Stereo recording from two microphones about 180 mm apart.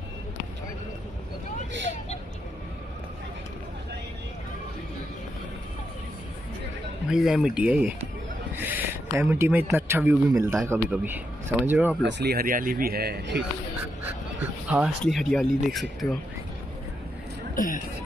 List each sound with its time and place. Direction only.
7.1 s speech: 5° right (ahead or behind)
12.0 s speech: 70° right (ahead or behind)
14.7 s speech: centre (ahead or behind)
17.6 s speech: 50° left (ahead or behind)